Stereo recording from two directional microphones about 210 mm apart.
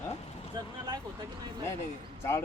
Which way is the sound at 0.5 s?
20° right (ahead or behind).